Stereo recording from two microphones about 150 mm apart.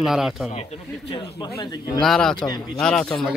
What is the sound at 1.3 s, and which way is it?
Speech, 30° left (ahead or behind).